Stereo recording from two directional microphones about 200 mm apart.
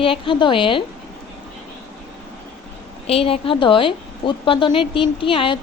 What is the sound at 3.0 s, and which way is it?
A woman's voice, 30° left (ahead or behind).